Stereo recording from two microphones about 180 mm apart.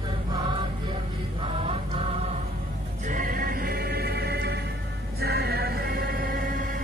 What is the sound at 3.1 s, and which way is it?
Music, 50° right (ahead or behind).